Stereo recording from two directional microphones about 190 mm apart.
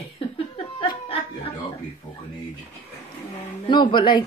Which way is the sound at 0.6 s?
30° left (ahead or behind).